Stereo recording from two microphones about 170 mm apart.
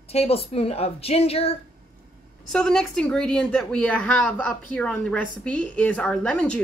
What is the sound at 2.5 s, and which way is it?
Speech, 5° left (ahead or behind).